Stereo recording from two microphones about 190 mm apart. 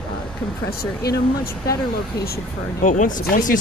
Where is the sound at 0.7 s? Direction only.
55° left (ahead or behind).